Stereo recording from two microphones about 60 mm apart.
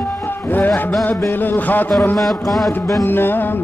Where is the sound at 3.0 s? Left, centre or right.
Left.